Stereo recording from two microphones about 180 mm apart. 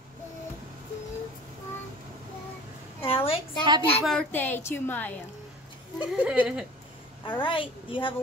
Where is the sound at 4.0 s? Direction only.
5° left (ahead or behind).